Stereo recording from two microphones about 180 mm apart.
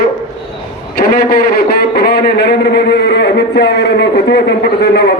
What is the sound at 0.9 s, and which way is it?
A man's voice, 55° left (ahead or behind).